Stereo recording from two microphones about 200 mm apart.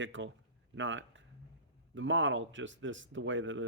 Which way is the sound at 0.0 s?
70° right (ahead or behind).